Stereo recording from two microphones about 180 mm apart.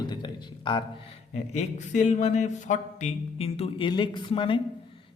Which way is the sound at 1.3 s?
40° left (ahead or behind).